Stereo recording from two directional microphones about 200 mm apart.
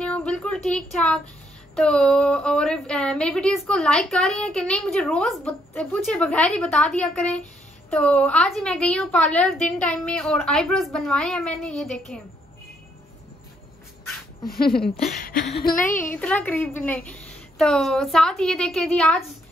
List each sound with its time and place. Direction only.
0.0 s a sound: 5° left (ahead or behind)
1.8 s a woman's voice: 5° left (ahead or behind)
14.5 s a woman's voice: 45° left (ahead or behind)
16.0 s a woman's voice: 10° left (ahead or behind)